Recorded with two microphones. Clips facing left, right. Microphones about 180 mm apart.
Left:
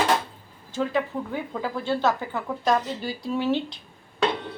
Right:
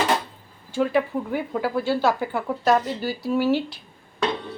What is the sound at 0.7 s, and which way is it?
Speech, 10° right (ahead or behind).